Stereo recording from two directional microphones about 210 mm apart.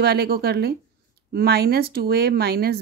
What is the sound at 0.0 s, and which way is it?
A woman's voice, 50° right (ahead or behind).